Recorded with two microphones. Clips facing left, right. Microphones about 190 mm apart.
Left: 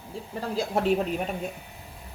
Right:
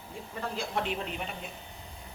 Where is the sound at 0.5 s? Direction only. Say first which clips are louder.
Left 10 dB; 40° left (ahead or behind).